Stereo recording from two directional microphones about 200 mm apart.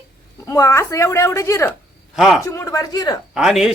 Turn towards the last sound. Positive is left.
turn(degrees=0)  # may be behind; listen again after turning